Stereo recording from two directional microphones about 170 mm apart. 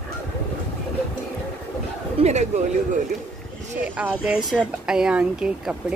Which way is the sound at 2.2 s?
40° right (ahead or behind).